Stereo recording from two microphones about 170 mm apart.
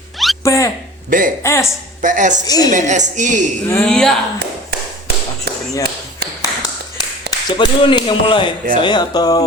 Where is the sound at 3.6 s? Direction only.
15° left (ahead or behind).